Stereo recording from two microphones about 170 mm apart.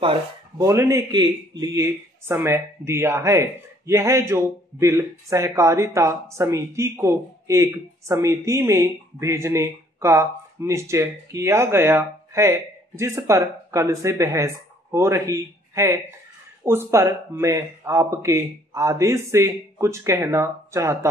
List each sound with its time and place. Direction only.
0.6 s speech: 15° right (ahead or behind)